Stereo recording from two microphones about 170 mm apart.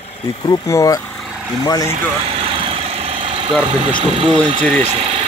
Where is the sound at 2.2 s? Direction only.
35° right (ahead or behind).